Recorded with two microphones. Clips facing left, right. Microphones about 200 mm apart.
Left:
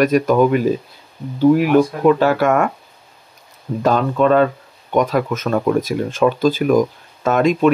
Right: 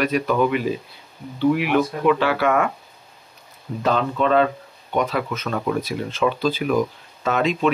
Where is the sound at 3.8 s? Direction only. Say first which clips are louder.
Left 5 dB; 45° left (ahead or behind).